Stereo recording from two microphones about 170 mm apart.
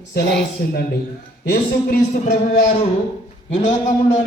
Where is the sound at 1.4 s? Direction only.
60° left (ahead or behind).